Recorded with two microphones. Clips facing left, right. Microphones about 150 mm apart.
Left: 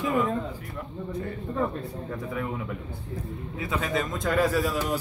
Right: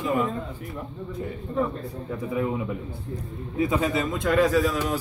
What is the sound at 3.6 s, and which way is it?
Speech, 20° right (ahead or behind).